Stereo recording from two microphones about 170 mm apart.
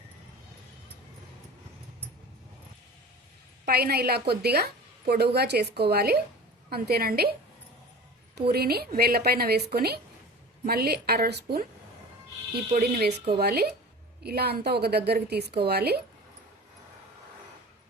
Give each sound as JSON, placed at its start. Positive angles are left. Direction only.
{"t": 3.7, "sound": "a woman's voice", "side_deg": -65}
{"t": 8.4, "sound": "a woman's voice", "side_deg": -70}
{"t": 12.7, "sound": "a woman's voice", "side_deg": -65}